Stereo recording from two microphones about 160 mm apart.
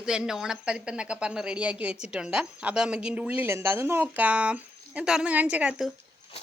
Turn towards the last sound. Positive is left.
turn(degrees=-5)  # may be behind; listen again after turning